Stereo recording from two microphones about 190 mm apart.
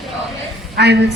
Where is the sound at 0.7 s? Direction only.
60° right (ahead or behind).